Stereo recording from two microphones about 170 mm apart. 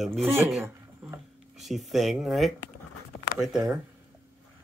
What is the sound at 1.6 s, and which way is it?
Speech, centre (ahead or behind).